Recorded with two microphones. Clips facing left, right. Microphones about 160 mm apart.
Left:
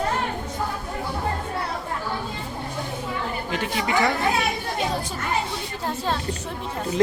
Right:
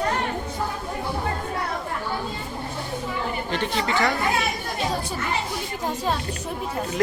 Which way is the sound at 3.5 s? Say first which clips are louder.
Right 1 dB; 5° left (ahead or behind).